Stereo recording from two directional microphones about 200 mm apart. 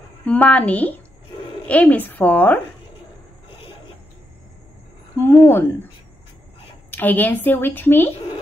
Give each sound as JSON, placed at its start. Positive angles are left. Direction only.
{"t": 0.2, "sound": "a woman's voice", "side_deg": 5}
{"t": 5.2, "sound": "a woman's voice", "side_deg": 10}
{"t": 6.9, "sound": "a woman's voice", "side_deg": 10}